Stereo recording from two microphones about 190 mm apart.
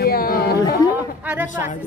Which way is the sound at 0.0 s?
50° left (ahead or behind).